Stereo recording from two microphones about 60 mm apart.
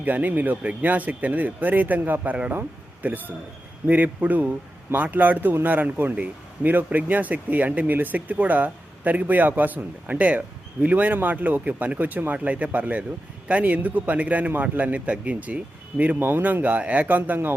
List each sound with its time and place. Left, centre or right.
0.0 s speech: right